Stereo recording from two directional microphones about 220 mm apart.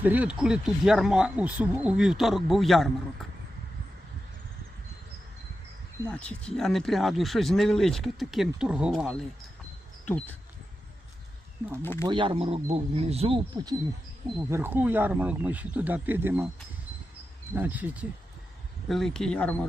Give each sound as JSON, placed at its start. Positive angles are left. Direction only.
{"t": 0.0, "sound": "speech", "side_deg": -5}
{"t": 6.1, "sound": "speech", "side_deg": 5}
{"t": 10.1, "sound": "speech", "side_deg": 10}
{"t": 11.8, "sound": "speech", "side_deg": 10}
{"t": 12.0, "sound": "speech", "side_deg": -20}
{"t": 14.3, "sound": "speech", "side_deg": -15}
{"t": 17.5, "sound": "speech", "side_deg": -10}